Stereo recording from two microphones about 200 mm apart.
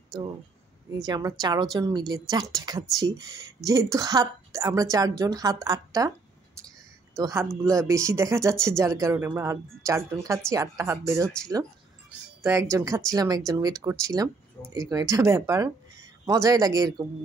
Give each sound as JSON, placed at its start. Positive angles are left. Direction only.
{"t": 0.9, "sound": "speech", "side_deg": -20}
{"t": 7.2, "sound": "speech", "side_deg": -15}